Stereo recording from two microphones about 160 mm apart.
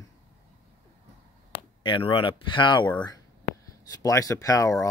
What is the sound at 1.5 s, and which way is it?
Speech, 30° left (ahead or behind).